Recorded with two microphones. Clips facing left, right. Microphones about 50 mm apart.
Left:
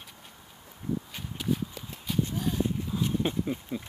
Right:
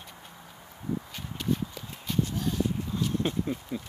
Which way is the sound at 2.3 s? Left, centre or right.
Centre.